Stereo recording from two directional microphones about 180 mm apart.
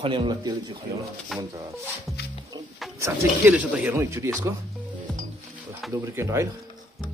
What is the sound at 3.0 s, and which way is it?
Speech, 10° right (ahead or behind).